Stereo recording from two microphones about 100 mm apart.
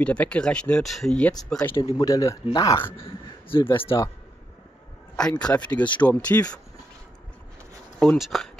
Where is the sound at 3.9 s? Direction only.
40° left (ahead or behind).